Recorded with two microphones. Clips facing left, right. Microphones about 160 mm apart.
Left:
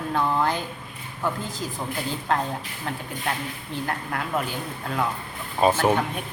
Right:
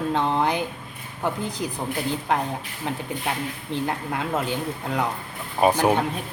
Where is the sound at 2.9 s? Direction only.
20° right (ahead or behind).